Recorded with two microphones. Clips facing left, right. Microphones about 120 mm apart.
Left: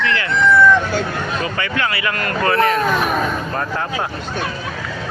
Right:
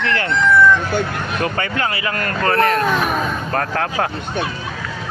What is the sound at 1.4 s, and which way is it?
Speech, 40° right (ahead or behind).